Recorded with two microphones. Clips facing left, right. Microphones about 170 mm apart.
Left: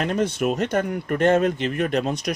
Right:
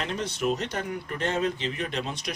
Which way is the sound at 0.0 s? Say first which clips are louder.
Left 7 dB; 50° left (ahead or behind).